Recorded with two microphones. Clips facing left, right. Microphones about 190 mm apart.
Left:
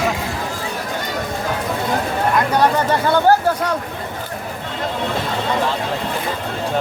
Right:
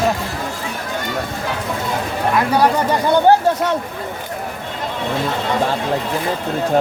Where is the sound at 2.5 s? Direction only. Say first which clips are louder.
Right 2 dB; 15° right (ahead or behind).